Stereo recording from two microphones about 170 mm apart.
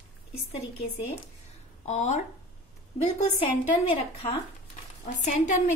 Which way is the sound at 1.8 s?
40° left (ahead or behind).